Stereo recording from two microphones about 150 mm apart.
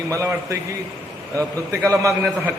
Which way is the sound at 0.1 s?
20° right (ahead or behind).